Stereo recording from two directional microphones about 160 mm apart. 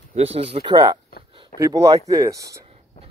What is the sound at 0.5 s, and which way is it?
Speech, 30° right (ahead or behind).